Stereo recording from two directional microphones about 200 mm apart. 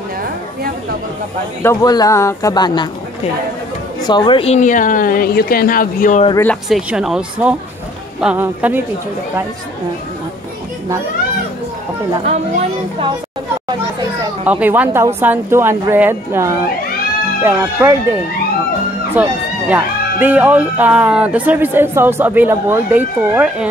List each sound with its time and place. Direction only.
1.6 s speech: 15° left (ahead or behind)
4.0 s speech: 20° left (ahead or behind); by 6.2 s 40° left (ahead or behind)
6.4 s speech: 5° left (ahead or behind)
14.4 s speech: 10° right (ahead or behind)
19.1 s speech: 10° right (ahead or behind)